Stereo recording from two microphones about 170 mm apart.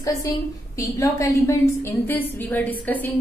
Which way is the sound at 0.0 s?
20° left (ahead or behind).